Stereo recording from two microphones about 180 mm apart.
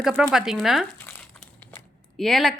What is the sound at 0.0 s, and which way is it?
Speech, 5° right (ahead or behind).